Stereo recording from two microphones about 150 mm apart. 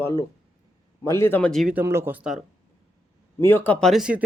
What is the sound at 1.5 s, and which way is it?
Speech, centre (ahead or behind).